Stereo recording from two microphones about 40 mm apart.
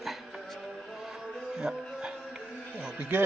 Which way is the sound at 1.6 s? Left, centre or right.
Centre.